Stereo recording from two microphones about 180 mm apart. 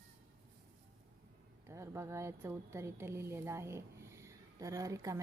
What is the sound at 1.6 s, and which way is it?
A woman's voice, 15° right (ahead or behind).